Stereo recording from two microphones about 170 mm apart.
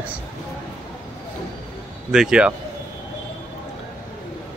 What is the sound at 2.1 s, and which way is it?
Speech, 5° right (ahead or behind).